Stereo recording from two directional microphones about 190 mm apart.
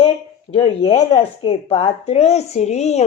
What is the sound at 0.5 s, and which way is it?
Speech, 30° left (ahead or behind).